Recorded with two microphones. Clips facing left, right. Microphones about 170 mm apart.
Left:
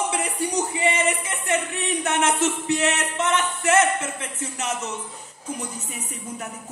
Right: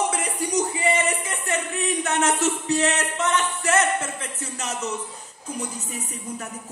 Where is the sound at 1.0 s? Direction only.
35° right (ahead or behind).